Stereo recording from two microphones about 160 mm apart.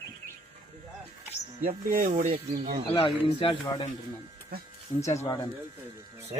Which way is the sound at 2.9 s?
35° left (ahead or behind).